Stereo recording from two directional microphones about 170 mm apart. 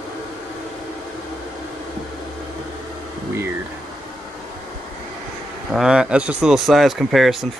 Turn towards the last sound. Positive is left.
turn(degrees=0)  # may be behind; listen again after turning